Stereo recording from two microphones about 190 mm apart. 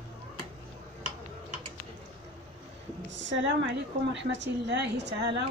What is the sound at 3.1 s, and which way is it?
A woman's voice, 70° right (ahead or behind).